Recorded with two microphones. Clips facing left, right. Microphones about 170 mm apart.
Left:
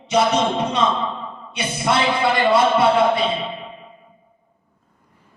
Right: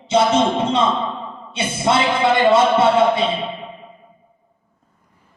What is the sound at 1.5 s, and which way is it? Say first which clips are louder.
A man's voice: right 2 dB; 25° right (ahead or behind).